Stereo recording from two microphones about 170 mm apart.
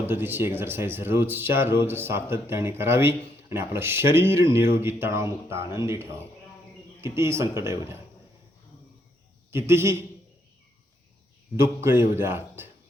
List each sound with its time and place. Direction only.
0.0 s speech: 10° right (ahead or behind)
9.5 s speech: 15° right (ahead or behind)
11.6 s speech: 15° right (ahead or behind)